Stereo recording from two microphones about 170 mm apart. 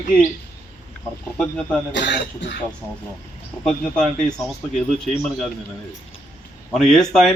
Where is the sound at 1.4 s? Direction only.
5° left (ahead or behind).